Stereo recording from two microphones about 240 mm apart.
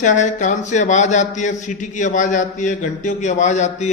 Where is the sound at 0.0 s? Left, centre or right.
Left.